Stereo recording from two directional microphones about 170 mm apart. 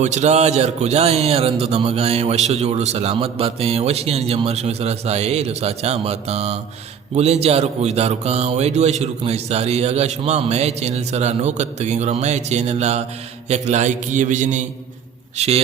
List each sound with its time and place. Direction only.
0.0 s a man's voice: 40° right (ahead or behind)